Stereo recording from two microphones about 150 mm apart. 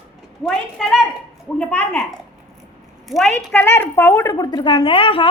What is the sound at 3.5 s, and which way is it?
Speech, 15° left (ahead or behind).